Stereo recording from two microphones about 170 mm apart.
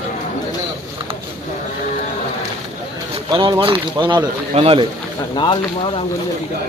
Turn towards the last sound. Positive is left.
turn(degrees=30)  # may be behind; listen again after turning